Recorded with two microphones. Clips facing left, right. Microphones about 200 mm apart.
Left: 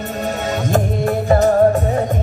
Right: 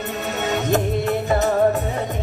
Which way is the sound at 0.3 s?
40° left (ahead or behind).